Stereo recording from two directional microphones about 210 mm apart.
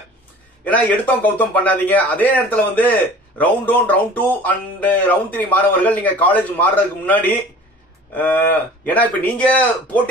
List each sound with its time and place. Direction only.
0.7 s a man's voice: 10° left (ahead or behind)